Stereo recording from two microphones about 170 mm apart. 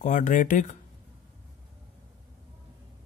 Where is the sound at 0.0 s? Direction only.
50° left (ahead or behind).